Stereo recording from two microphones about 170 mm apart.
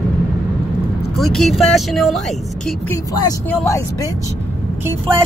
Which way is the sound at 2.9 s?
20° left (ahead or behind).